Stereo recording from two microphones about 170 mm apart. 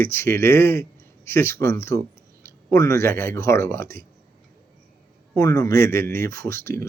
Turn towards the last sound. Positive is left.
turn(degrees=15)  # may be behind; listen again after turning